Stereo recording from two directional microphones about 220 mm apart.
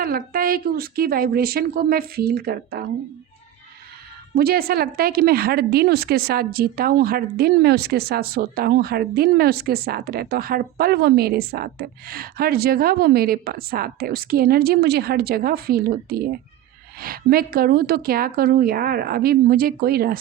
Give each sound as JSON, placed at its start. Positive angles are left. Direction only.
{"t": 0.0, "sound": "a woman's voice", "side_deg": -40}
{"t": 4.4, "sound": "a woman's voice", "side_deg": -45}